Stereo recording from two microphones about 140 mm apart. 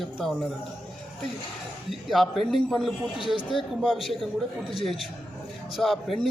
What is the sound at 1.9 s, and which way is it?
Speech, centre (ahead or behind).